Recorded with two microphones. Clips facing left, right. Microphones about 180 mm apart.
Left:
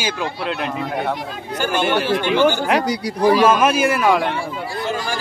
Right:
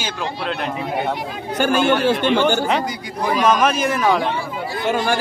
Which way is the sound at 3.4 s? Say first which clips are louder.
Left 2 dB; 5° left (ahead or behind).